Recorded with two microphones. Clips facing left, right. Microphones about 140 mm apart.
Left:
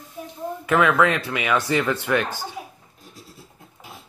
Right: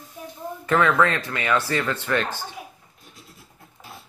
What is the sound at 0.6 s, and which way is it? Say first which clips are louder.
Speech: left 1 dB; 10° left (ahead or behind).